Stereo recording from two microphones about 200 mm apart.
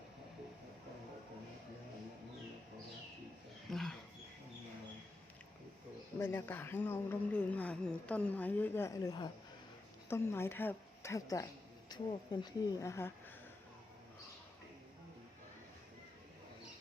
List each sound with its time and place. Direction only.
3.7 s wild animals: centre (ahead or behind)
6.1 s a woman's voice: 10° left (ahead or behind)